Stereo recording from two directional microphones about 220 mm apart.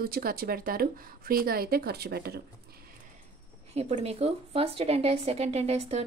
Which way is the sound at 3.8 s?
30° right (ahead or behind).